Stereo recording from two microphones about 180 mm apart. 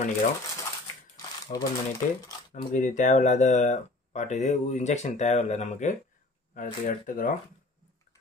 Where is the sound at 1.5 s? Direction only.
40° left (ahead or behind).